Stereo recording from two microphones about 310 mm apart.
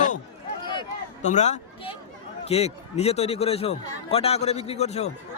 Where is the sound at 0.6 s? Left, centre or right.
Centre.